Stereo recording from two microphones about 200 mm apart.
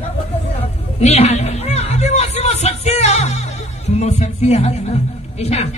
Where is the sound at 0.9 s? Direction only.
30° left (ahead or behind).